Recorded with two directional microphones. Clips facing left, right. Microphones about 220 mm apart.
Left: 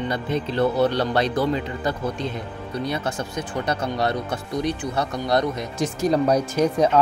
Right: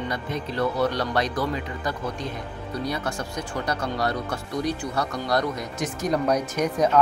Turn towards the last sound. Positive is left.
turn(degrees=30)  # may be behind; listen again after turning